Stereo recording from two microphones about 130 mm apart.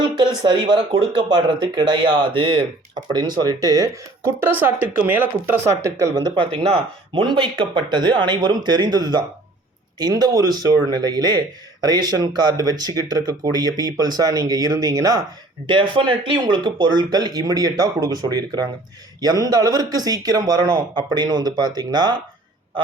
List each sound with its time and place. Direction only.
0.4 s speech: 35° right (ahead or behind)
4.4 s speech: 15° right (ahead or behind); by 6.7 s 30° right (ahead or behind)
6.7 s speech: 40° right (ahead or behind); by 15.2 s 25° right (ahead or behind)
15.6 s speech: 40° right (ahead or behind)